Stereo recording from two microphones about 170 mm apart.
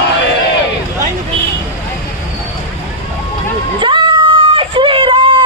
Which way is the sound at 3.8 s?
25° right (ahead or behind).